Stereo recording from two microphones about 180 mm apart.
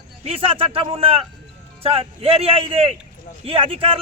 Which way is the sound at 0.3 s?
30° right (ahead or behind).